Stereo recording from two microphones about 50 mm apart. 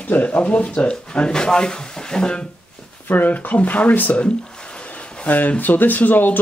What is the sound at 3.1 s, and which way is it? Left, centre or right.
Speech, left.